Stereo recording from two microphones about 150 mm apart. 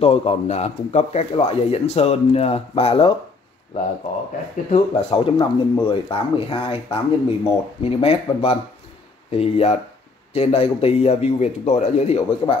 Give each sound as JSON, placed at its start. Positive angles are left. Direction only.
{"t": 0.0, "sound": "speech", "side_deg": 40}
{"t": 4.6, "sound": "speech", "side_deg": 35}